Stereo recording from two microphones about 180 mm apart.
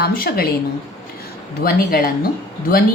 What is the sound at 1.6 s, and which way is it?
Speech, 55° left (ahead or behind).